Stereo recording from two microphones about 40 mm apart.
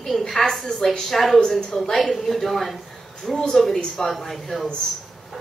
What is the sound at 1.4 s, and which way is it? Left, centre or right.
Speech, centre.